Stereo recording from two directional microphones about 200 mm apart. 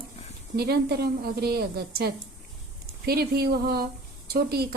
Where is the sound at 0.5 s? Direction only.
55° right (ahead or behind).